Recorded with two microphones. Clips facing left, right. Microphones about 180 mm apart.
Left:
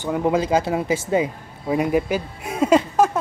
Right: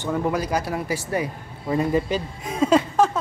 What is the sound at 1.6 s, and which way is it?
Speech, 10° left (ahead or behind).